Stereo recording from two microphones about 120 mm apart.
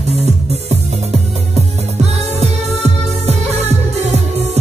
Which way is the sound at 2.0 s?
65° right (ahead or behind).